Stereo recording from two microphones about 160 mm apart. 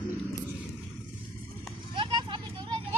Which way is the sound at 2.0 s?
30° right (ahead or behind).